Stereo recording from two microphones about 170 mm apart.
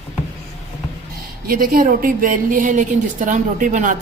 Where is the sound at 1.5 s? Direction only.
55° right (ahead or behind).